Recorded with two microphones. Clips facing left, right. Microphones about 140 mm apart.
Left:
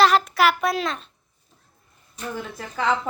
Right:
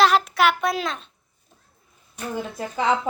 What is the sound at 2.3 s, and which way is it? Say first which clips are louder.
Speech: right 5 dB; 20° right (ahead or behind).